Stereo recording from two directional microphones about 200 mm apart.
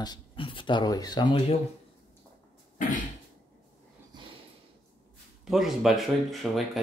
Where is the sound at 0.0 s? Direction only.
25° left (ahead or behind).